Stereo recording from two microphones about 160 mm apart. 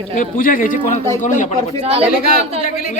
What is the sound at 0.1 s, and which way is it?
Speech, 60° left (ahead or behind).